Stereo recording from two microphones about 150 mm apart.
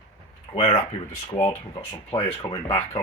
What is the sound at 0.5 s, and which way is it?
Speech, 45° left (ahead or behind).